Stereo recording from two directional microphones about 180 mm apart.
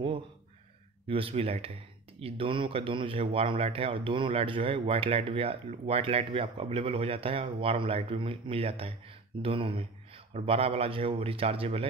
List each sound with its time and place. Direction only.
1.0 s speech: 30° right (ahead or behind)